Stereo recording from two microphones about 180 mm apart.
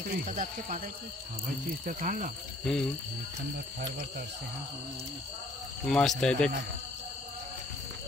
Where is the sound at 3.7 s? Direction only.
55° right (ahead or behind).